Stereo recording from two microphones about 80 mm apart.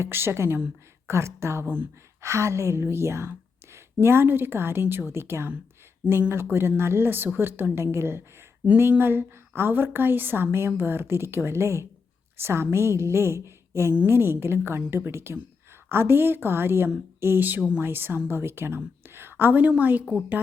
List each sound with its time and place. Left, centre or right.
0.0 s a woman's voice: right
2.2 s a woman's voice: right
13.9 s a woman's voice: right